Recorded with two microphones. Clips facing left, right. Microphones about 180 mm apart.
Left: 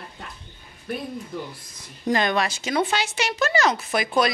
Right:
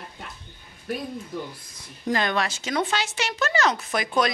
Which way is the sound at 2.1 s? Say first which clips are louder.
Left 2 dB; 15° left (ahead or behind).